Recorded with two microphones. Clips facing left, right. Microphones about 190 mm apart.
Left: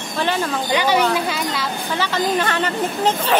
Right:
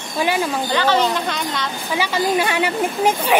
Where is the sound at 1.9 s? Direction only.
10° right (ahead or behind).